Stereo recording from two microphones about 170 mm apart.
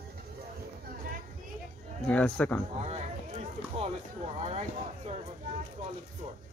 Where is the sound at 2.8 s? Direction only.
40° right (ahead or behind).